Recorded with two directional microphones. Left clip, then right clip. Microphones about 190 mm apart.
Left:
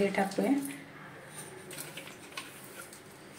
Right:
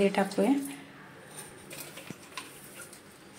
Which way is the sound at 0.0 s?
50° right (ahead or behind).